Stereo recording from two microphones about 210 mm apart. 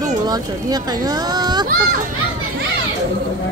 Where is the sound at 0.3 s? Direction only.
20° right (ahead or behind).